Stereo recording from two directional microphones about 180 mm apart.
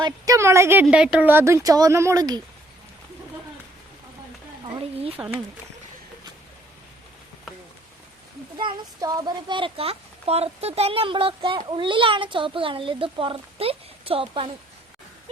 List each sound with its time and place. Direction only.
0.0 s a woman's voice: 15° right (ahead or behind)
4.8 s speech: 35° right (ahead or behind)
5.1 s a woman's voice: 10° right (ahead or behind)
8.5 s a child's voice: 25° right (ahead or behind)